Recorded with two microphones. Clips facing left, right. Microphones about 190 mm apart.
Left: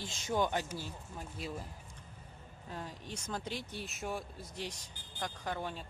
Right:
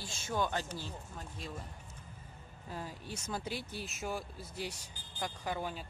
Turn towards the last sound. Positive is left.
turn(degrees=-5)  # may be behind; listen again after turning